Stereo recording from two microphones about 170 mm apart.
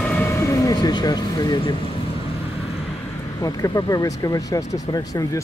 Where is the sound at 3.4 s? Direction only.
20° left (ahead or behind).